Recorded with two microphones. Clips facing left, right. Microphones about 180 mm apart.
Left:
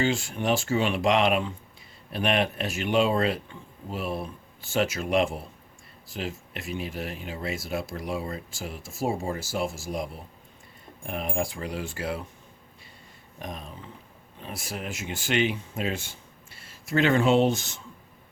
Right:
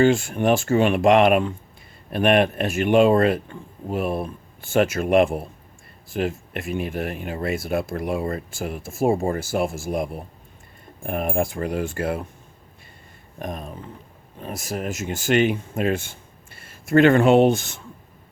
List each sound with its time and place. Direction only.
0.0 s speech: 50° right (ahead or behind)
13.4 s speech: 50° right (ahead or behind)